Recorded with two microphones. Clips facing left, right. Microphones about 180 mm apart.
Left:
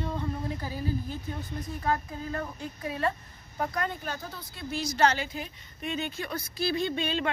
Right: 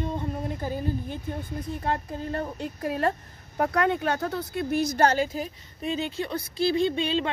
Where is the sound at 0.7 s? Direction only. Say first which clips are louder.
Right 3 dB; 55° right (ahead or behind).